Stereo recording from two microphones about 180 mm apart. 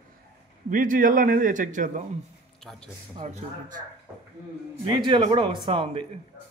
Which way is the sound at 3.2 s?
45° right (ahead or behind).